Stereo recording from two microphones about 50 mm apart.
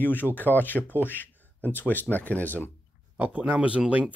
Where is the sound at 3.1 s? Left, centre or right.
Right.